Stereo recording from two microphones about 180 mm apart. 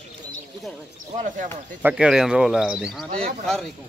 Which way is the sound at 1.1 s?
45° right (ahead or behind).